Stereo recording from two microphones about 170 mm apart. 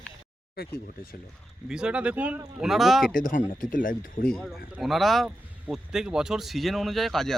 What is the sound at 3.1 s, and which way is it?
Speech, 55° left (ahead or behind).